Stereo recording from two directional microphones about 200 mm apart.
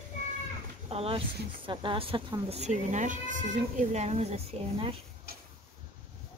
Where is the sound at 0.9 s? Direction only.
30° right (ahead or behind).